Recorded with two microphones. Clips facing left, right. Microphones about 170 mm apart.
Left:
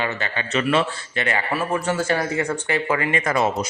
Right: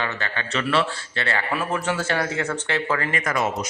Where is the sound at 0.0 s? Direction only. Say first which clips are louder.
Left 2 dB; 15° left (ahead or behind).